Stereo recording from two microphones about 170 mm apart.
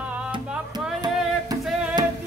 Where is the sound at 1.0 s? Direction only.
25° right (ahead or behind).